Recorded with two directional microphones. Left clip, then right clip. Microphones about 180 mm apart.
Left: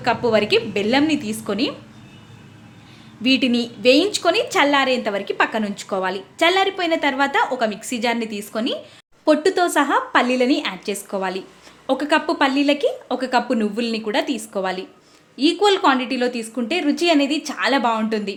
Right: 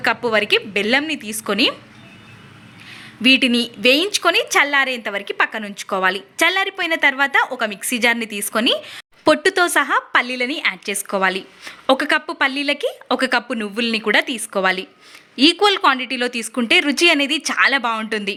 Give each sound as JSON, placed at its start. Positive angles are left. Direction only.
{"t": 0.0, "sound": "a woman's voice", "side_deg": -15}
{"t": 3.2, "sound": "a woman's voice", "side_deg": -10}